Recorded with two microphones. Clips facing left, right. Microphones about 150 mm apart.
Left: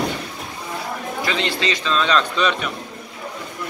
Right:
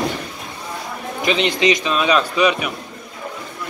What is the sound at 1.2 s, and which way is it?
A man's voice, 20° right (ahead or behind).